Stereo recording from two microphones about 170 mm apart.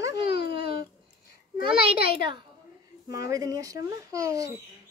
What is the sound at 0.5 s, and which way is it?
Baby cry, 30° right (ahead or behind).